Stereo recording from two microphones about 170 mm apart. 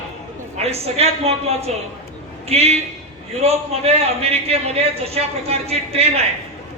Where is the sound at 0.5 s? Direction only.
40° right (ahead or behind).